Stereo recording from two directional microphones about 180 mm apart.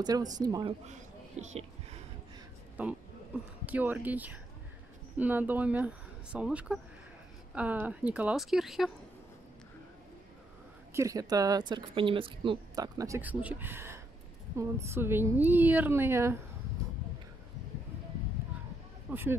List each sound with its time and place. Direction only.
0.0 s a woman's voice: 20° right (ahead or behind)
0.8 s speech: 40° right (ahead or behind)
3.6 s a woman's voice: 10° right (ahead or behind)
10.9 s a woman's voice: 15° right (ahead or behind)
19.0 s speech: 10° right (ahead or behind)